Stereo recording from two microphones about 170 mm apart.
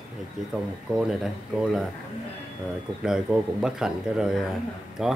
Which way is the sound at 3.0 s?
5° right (ahead or behind).